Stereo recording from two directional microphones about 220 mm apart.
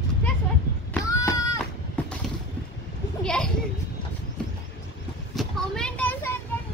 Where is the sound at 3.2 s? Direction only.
5° left (ahead or behind).